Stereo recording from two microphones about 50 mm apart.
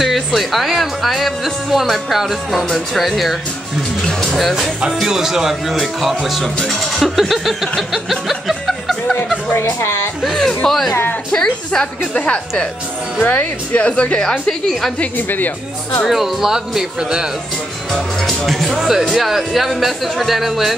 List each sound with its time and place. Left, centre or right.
0.0 s speech: centre
4.0 s speech: centre
4.4 s speech: centre
5.0 s speech: centre
6.7 s a sound: centre
9.6 s a woman's voice: left
10.3 s a woman's voice: centre
15.1 s speech: left
16.1 s speech: centre
17.9 s speech: centre
18.7 s speech: centre